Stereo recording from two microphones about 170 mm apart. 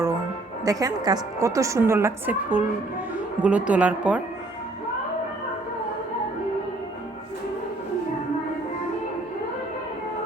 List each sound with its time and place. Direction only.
0.6 s a woman's voice: 20° right (ahead or behind)